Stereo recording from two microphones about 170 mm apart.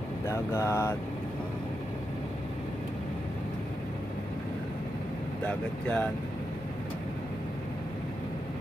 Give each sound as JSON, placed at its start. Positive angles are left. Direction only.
{"t": 0.3, "sound": "mantra", "side_deg": 15}
{"t": 5.5, "sound": "mantra", "side_deg": 5}